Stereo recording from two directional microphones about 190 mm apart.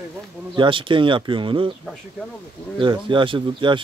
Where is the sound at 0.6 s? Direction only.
25° right (ahead or behind).